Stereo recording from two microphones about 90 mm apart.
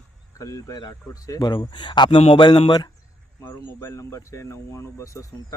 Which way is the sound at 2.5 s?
55° left (ahead or behind).